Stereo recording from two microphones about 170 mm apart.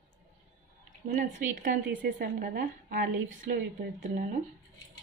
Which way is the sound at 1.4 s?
50° right (ahead or behind).